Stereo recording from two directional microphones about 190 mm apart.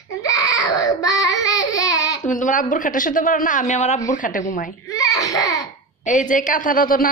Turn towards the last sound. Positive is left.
turn(degrees=45)  # may be behind; listen again after turning